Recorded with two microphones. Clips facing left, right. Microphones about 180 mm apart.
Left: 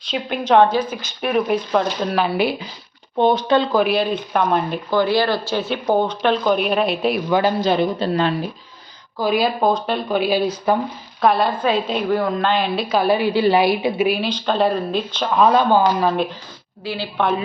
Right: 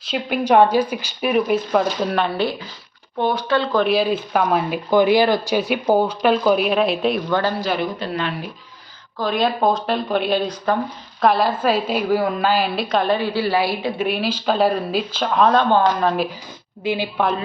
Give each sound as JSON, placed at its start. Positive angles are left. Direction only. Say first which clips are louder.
{"t": 0.0, "sound": "a woman's voice", "louder": "right 2 dB", "side_deg": -5}
{"t": 2.1, "sound": "a woman's voice", "louder": "left 2 dB", "side_deg": 10}
{"t": 4.9, "sound": "a woman's voice", "louder": "right 3 dB", "side_deg": -15}
{"t": 7.7, "sound": "a woman's voice", "louder": "left 4 dB", "side_deg": 25}
{"t": 9.1, "sound": "a woman's voice", "louder": "left 1 dB", "side_deg": 5}
{"t": 14.1, "sound": "a woman's voice", "louder": "even", "side_deg": -5}
{"t": 15.4, "sound": "a woman's voice", "louder": "left 1 dB", "side_deg": 10}
{"t": 16.8, "sound": "a woman's voice", "louder": "right 4 dB", "side_deg": -20}